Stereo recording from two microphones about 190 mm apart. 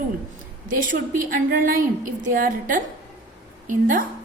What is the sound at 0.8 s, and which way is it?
A woman's voice, 45° right (ahead or behind).